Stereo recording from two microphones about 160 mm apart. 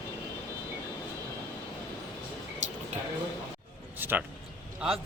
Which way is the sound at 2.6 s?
50° right (ahead or behind).